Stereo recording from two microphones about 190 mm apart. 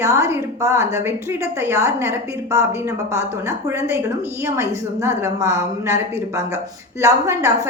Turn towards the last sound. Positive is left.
turn(degrees=-15)  # may be behind; listen again after turning